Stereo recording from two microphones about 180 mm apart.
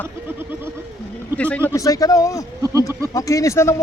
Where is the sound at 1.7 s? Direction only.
20° left (ahead or behind).